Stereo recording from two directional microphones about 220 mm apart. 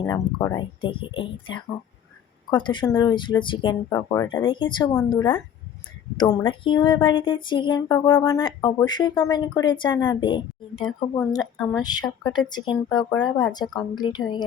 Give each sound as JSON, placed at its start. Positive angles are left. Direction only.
{"t": 0.0, "sound": "speech", "side_deg": 15}
{"t": 10.8, "sound": "speech", "side_deg": 5}
{"t": 11.7, "sound": "speech", "side_deg": 20}